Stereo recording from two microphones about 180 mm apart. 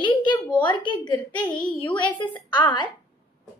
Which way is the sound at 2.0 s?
25° left (ahead or behind).